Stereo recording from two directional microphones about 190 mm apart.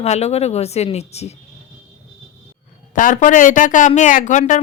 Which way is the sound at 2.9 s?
45° left (ahead or behind).